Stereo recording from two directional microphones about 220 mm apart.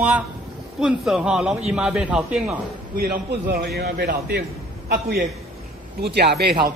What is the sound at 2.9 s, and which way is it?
A man's voice, 45° right (ahead or behind).